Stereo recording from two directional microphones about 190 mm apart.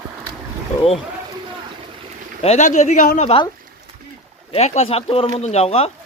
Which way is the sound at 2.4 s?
35° left (ahead or behind).